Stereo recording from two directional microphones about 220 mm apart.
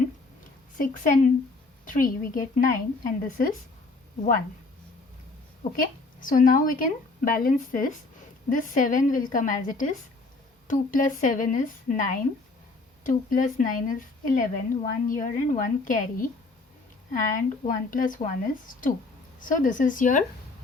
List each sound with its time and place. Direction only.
0.8 s a woman's voice: 35° left (ahead or behind)
5.8 s a woman's voice: 40° left (ahead or behind)